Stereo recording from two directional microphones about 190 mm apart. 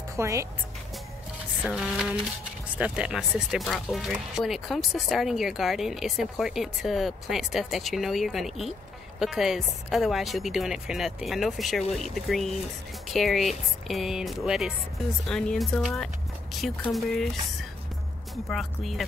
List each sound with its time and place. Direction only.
0.2 s speech: 15° right (ahead or behind)
1.6 s speech: 5° right (ahead or behind)